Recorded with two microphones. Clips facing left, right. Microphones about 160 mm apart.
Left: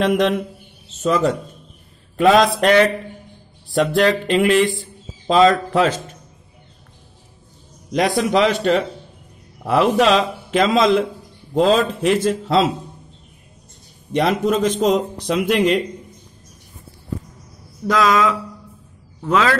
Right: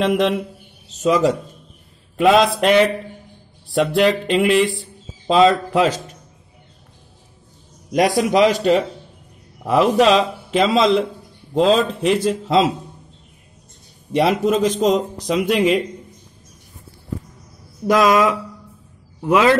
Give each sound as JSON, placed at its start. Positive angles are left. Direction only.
{"t": 0.0, "sound": "speech", "side_deg": 0}
{"t": 7.9, "sound": "a man's voice", "side_deg": -45}
{"t": 8.2, "sound": "speech", "side_deg": -10}
{"t": 9.6, "sound": "a man's voice", "side_deg": 0}
{"t": 9.9, "sound": "a man's voice", "side_deg": -35}
{"t": 10.5, "sound": "speech", "side_deg": 0}
{"t": 14.1, "sound": "speech", "side_deg": 0}
{"t": 17.8, "sound": "speech", "side_deg": -15}